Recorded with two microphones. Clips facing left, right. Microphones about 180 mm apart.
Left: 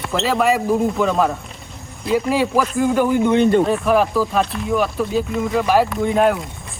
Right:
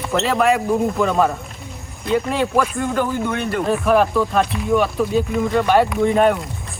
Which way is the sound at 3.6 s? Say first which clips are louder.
Even; centre (ahead or behind).